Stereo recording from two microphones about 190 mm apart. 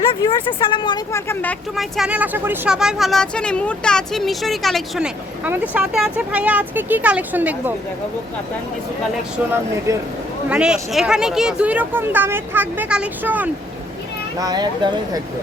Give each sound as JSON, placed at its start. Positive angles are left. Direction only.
{"t": 0.1, "sound": "speech", "side_deg": 25}
{"t": 1.7, "sound": "speech", "side_deg": 0}
{"t": 10.5, "sound": "speech", "side_deg": -5}
{"t": 14.3, "sound": "speech", "side_deg": -20}